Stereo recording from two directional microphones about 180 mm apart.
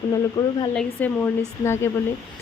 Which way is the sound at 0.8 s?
10° left (ahead or behind).